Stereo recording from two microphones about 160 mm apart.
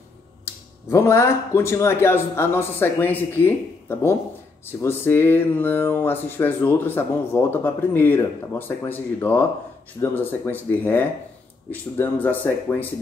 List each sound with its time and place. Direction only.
0.8 s speech: 15° left (ahead or behind)
4.6 s speech: 15° left (ahead or behind)